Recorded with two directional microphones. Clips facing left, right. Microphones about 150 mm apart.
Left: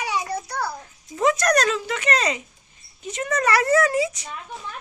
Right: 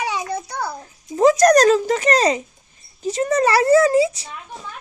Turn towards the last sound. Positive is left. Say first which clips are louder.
# right 6 dB
turn(degrees=-30)  # may be behind; listen again after turning